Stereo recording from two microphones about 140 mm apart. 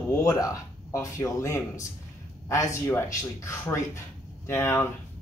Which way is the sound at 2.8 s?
20° left (ahead or behind).